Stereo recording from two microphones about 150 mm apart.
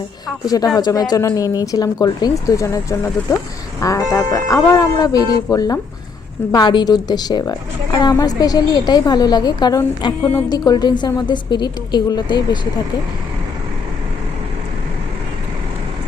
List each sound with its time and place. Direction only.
0.4 s speech: 25° left (ahead or behind)